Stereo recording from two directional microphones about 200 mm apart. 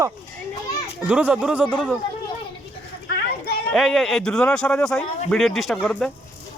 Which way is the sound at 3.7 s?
Centre (ahead or behind).